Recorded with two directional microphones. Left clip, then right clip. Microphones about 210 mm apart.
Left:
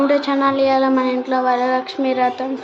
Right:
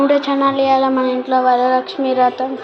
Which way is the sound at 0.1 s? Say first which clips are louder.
Right 2 dB; centre (ahead or behind).